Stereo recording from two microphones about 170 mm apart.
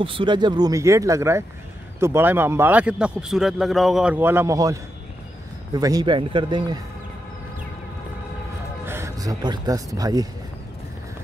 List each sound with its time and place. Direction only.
0.0 s a man's voice: 30° right (ahead or behind)
8.8 s speech: 15° right (ahead or behind)